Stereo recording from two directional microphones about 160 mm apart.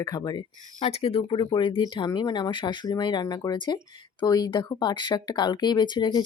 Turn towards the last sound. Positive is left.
turn(degrees=25)  # may be behind; listen again after turning